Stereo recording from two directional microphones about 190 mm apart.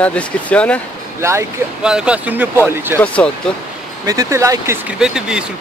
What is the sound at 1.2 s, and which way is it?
Speech, 15° right (ahead or behind).